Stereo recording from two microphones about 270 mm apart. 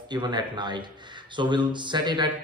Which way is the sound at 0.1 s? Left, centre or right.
Centre.